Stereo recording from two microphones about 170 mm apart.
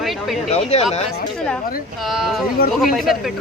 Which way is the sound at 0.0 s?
Centre (ahead or behind).